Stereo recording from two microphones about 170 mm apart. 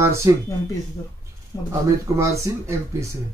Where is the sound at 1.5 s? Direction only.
20° left (ahead or behind).